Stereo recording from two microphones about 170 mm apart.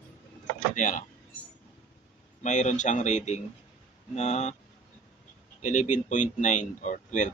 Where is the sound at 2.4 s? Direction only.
45° left (ahead or behind).